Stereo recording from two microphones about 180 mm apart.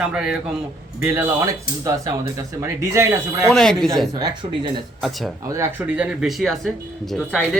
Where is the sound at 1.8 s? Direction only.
20° right (ahead or behind).